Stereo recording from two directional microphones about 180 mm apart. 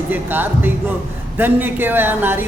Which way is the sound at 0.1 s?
10° right (ahead or behind).